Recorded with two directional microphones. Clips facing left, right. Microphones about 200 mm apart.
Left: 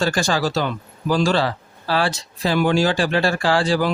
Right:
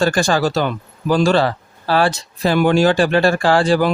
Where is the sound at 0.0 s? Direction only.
50° right (ahead or behind).